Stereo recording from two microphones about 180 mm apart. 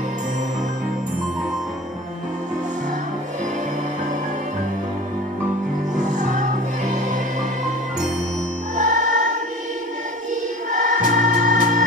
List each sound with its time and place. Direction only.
6.1 s music: 45° right (ahead or behind)
8.7 s music: 40° right (ahead or behind)
10.7 s music: 45° right (ahead or behind)